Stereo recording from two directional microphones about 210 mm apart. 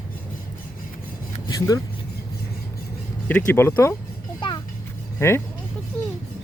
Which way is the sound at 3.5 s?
10° left (ahead or behind).